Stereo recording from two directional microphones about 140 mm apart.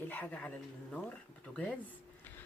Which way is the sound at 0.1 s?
10° left (ahead or behind).